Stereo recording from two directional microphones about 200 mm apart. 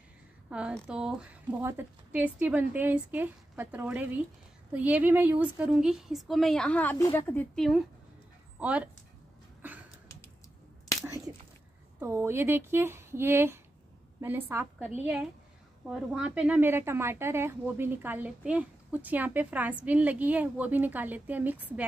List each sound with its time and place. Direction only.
0.5 s a woman's voice: 5° right (ahead or behind)
11.1 s a sound: 15° right (ahead or behind)
12.0 s speech: 10° right (ahead or behind)